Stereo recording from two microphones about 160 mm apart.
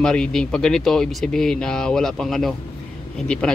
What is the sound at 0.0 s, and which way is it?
Speech, 5° left (ahead or behind).